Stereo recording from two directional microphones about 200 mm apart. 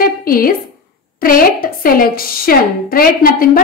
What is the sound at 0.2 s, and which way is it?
A woman's voice, 45° left (ahead or behind).